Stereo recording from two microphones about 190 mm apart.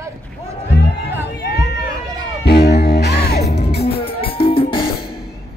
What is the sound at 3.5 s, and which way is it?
Music, 35° left (ahead or behind).